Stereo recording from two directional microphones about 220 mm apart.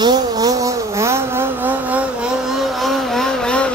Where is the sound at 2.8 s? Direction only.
Centre (ahead or behind).